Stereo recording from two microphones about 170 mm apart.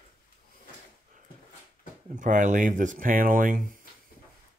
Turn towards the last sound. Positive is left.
turn(degrees=-55)  # may be behind; listen again after turning